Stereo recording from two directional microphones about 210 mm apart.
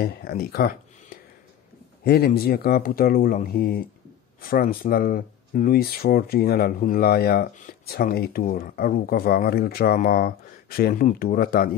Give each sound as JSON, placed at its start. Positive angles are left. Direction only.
{"t": 0.0, "sound": "speech", "side_deg": 45}
{"t": 2.0, "sound": "speech", "side_deg": 50}